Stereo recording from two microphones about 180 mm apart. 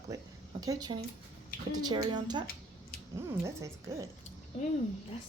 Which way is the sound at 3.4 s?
15° right (ahead or behind).